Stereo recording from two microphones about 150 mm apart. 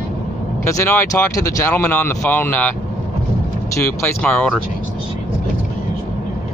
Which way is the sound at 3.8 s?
15° left (ahead or behind).